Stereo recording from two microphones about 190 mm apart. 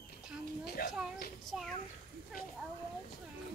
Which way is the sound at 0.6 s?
55° left (ahead or behind).